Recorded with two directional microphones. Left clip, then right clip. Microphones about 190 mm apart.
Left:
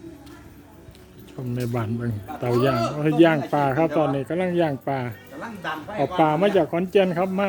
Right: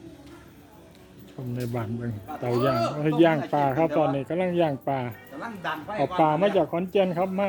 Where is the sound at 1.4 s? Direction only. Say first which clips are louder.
Left 4 dB; 15° left (ahead or behind).